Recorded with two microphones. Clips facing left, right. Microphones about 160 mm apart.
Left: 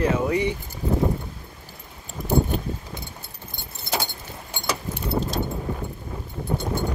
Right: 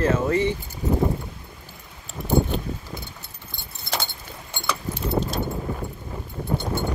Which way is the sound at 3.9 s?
10° left (ahead or behind).